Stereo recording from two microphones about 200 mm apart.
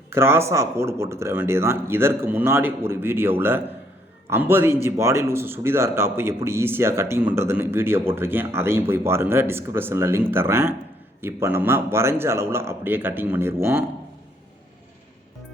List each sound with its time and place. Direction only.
0.1 s a man's voice: 15° right (ahead or behind)